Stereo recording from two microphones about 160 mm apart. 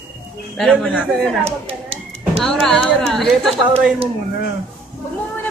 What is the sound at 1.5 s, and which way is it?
Speech, 40° right (ahead or behind).